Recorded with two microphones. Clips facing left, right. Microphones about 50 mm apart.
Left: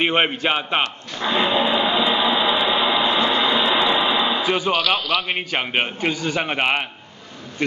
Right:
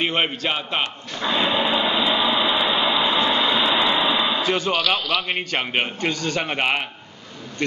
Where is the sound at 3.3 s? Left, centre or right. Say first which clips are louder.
Left 1 dB; centre.